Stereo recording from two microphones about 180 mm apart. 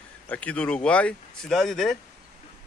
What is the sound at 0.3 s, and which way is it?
Speech, 5° left (ahead or behind).